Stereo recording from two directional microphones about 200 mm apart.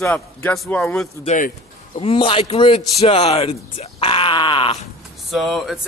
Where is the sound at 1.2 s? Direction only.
40° left (ahead or behind).